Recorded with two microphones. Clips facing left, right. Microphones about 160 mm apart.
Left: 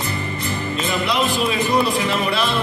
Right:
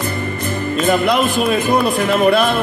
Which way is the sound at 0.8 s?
50° right (ahead or behind).